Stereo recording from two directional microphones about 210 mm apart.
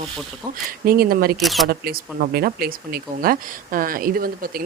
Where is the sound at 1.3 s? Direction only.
Centre (ahead or behind).